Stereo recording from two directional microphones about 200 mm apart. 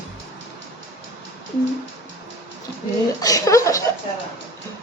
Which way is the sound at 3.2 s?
15° left (ahead or behind).